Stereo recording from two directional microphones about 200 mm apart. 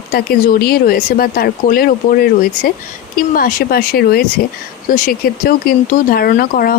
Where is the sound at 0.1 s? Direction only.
50° left (ahead or behind).